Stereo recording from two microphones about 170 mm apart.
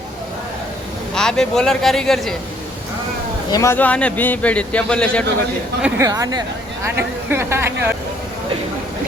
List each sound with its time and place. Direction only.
1.1 s speech: 5° left (ahead or behind)
3.5 s speech: 15° left (ahead or behind)
6.0 s speech: 20° right (ahead or behind)